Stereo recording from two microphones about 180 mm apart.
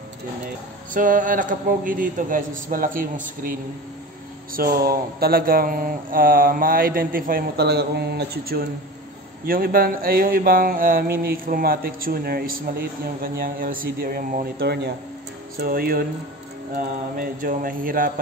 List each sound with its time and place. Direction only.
0.9 s speech: 50° right (ahead or behind)
4.6 s speech: 55° right (ahead or behind)